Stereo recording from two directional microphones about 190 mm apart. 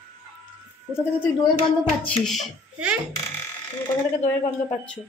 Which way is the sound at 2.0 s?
Centre (ahead or behind).